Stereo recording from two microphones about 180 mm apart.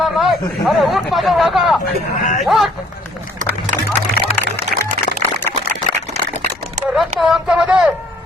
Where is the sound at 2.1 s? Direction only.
45° left (ahead or behind).